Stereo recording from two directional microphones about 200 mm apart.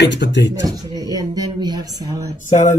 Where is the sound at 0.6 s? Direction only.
20° right (ahead or behind).